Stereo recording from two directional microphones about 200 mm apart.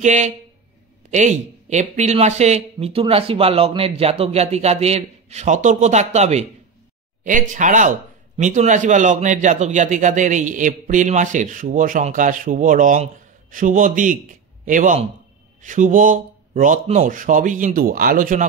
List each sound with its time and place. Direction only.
0.0 s a man's voice: 35° right (ahead or behind)